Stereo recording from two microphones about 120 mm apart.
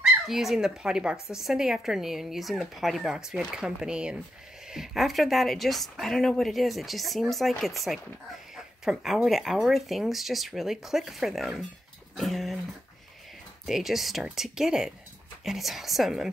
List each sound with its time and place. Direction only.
0.0 s speech: centre (ahead or behind)
13.7 s speech: centre (ahead or behind)